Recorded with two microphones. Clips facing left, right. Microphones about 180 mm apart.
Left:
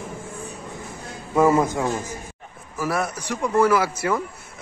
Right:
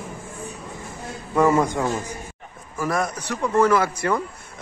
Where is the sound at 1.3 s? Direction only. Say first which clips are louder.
Left 1 dB; 10° left (ahead or behind).